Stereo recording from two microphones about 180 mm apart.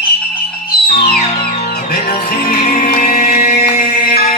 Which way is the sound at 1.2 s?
35° left (ahead or behind).